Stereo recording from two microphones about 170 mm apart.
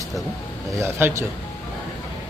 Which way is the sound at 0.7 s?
15° right (ahead or behind).